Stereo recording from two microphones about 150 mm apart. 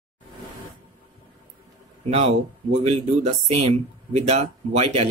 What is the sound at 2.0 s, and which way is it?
Speech, 45° right (ahead or behind).